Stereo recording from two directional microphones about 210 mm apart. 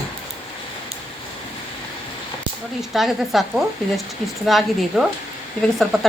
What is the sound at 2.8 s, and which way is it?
Speech, centre (ahead or behind).